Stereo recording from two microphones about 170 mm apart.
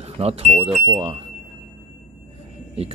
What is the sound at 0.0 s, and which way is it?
Speech, 35° right (ahead or behind).